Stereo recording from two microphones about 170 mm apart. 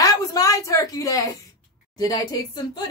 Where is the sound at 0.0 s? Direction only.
20° left (ahead or behind).